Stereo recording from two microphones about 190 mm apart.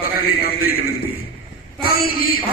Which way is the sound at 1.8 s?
50° left (ahead or behind).